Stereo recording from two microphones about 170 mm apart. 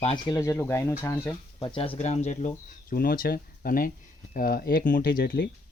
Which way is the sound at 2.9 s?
60° left (ahead or behind).